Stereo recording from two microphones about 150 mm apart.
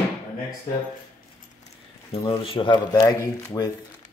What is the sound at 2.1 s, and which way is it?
Speech, 40° left (ahead or behind).